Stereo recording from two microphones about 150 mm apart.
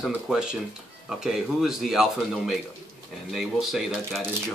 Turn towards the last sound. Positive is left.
turn(degrees=0)  # may be behind; listen again after turning